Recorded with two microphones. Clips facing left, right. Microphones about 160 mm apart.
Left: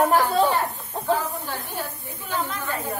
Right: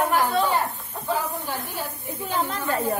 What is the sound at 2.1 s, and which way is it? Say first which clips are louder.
Speech: right 3 dB; 30° right (ahead or behind).